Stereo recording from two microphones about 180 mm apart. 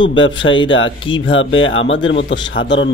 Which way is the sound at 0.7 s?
90° left.